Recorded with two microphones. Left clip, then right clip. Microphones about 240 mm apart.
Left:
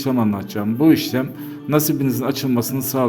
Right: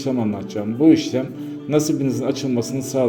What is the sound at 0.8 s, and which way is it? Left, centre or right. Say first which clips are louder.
Speech: right 1 dB; left.